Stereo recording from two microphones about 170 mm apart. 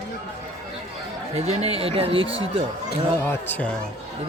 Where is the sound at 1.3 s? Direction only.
40° right (ahead or behind).